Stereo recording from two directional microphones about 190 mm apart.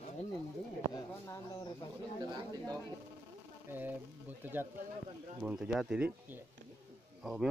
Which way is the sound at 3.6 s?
10° right (ahead or behind).